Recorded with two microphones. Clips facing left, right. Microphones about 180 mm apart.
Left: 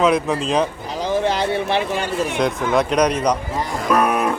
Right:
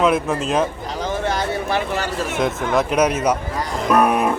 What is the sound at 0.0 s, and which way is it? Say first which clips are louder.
Speech: left 1 dB; centre (ahead or behind).